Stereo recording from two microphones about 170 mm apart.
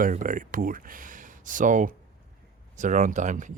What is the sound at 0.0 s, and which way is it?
Speech, 50° right (ahead or behind).